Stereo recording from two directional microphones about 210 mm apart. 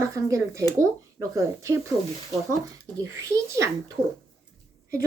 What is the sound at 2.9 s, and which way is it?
Speech, 15° right (ahead or behind).